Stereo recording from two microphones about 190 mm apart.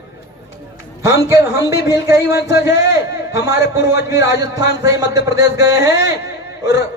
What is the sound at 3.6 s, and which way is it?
Speech, 70° left (ahead or behind).